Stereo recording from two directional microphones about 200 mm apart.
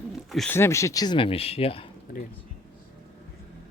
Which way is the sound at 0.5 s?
15° left (ahead or behind).